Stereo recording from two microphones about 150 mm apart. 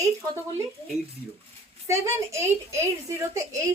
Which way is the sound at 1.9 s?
20° right (ahead or behind).